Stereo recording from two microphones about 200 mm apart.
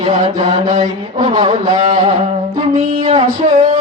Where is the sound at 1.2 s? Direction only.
20° right (ahead or behind).